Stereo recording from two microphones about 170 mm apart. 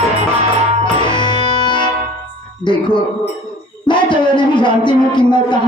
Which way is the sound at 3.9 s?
25° left (ahead or behind).